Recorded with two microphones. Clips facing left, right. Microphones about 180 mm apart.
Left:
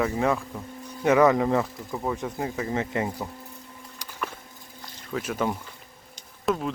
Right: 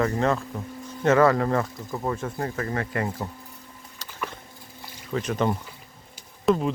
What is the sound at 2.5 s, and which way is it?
Speech, 20° left (ahead or behind).